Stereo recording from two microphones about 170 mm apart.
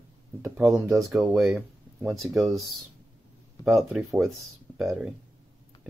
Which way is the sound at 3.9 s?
Centre (ahead or behind).